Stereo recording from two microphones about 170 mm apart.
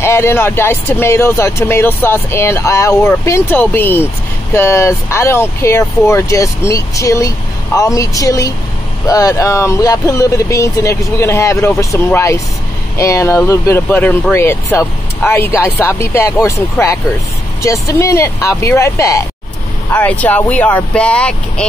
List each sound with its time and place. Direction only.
0.0 s speech: 15° left (ahead or behind)